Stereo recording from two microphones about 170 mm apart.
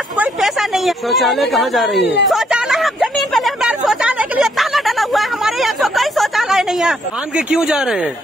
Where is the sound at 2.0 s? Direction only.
90° left.